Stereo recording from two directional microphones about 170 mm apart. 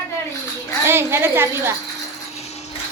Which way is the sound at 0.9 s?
15° right (ahead or behind).